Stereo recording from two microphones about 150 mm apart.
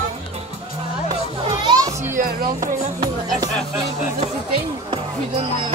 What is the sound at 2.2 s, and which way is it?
Speech, 75° right (ahead or behind).